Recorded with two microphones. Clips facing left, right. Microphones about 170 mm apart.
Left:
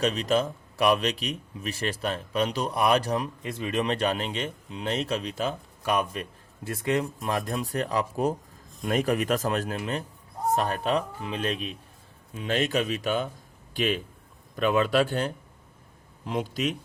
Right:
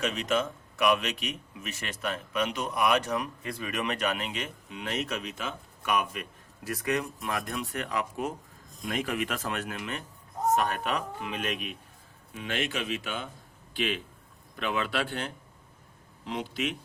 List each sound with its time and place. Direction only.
0.0 s speech: 35° left (ahead or behind)